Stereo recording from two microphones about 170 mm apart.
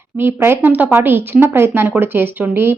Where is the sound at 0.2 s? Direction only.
15° right (ahead or behind).